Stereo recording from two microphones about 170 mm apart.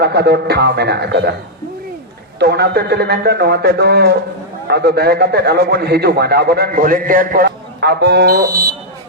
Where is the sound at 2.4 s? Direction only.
70° right (ahead or behind); by 7.4 s 55° right (ahead or behind).